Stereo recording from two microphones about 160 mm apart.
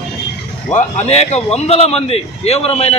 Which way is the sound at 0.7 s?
45° left (ahead or behind).